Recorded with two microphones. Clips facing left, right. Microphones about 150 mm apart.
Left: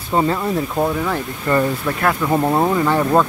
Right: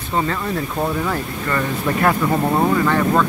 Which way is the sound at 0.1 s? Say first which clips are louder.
Left 4 dB; 25° left (ahead or behind).